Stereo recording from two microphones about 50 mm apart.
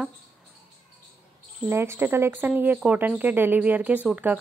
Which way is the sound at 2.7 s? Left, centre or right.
Right.